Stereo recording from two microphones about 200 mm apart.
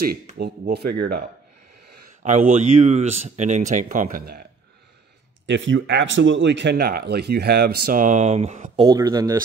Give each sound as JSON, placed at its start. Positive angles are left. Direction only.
{"t": 0.4, "sound": "speech", "side_deg": -50}
{"t": 2.2, "sound": "speech", "side_deg": -35}
{"t": 5.5, "sound": "speech", "side_deg": -70}
{"t": 8.8, "sound": "speech", "side_deg": -20}